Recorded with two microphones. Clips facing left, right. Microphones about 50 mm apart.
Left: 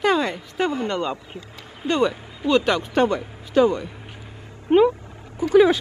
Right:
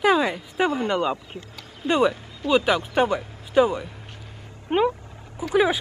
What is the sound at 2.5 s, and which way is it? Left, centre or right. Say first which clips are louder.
Speech: left 1 dB; centre.